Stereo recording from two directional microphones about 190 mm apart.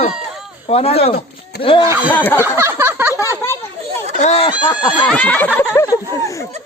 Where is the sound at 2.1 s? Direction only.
10° left (ahead or behind).